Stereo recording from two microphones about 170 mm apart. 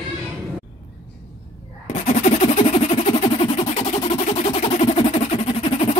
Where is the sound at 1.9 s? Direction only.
45° left (ahead or behind).